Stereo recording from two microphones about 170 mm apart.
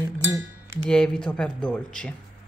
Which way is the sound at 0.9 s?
5° left (ahead or behind).